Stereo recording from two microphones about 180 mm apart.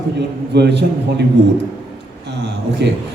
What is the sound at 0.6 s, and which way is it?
Speech, 70° right (ahead or behind).